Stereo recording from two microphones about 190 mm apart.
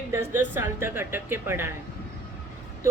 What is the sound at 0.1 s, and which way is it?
Speech, 10° right (ahead or behind).